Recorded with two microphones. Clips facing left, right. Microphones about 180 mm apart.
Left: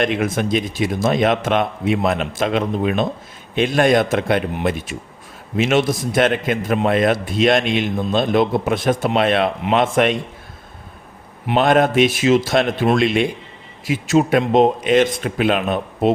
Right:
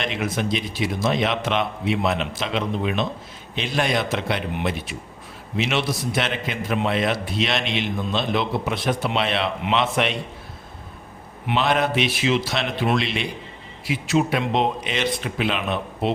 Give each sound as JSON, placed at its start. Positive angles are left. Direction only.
{"t": 0.0, "sound": "a man's voice", "side_deg": 50}
{"t": 11.4, "sound": "a man's voice", "side_deg": 50}